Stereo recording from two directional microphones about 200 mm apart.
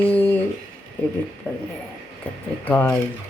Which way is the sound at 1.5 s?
5° left (ahead or behind).